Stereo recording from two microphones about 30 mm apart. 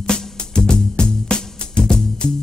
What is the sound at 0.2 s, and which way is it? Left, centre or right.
Music, left.